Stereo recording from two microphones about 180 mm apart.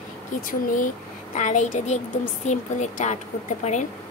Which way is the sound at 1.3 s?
40° left (ahead or behind).